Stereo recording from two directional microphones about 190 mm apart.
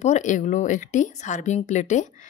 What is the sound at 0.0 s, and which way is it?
A woman's voice, 40° left (ahead or behind).